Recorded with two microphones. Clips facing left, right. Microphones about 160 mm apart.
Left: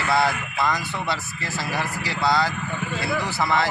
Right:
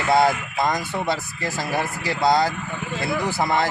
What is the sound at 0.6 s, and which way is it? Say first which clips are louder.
Speech: right 2 dB; 45° right (ahead or behind).